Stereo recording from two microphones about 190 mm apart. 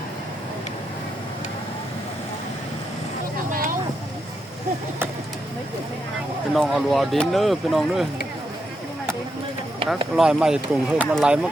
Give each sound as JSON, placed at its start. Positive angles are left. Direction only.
{"t": 3.5, "sound": "vehicle", "side_deg": -45}
{"t": 6.5, "sound": "speech", "side_deg": 0}
{"t": 10.2, "sound": "speech", "side_deg": -5}